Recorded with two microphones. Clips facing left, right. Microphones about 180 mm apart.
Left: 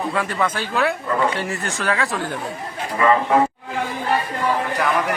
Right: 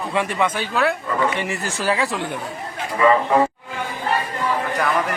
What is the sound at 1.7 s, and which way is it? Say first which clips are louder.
Speech: right 2 dB; 35° right (ahead or behind).